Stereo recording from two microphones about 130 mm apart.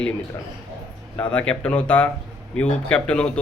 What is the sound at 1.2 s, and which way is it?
Speech, 10° left (ahead or behind).